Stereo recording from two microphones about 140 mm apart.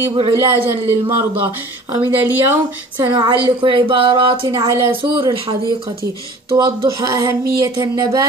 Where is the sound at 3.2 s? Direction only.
35° right (ahead or behind).